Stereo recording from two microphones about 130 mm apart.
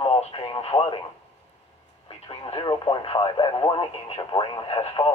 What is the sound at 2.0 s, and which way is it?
Speech, 40° left (ahead or behind).